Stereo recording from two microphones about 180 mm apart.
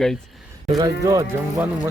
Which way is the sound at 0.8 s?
20° right (ahead or behind).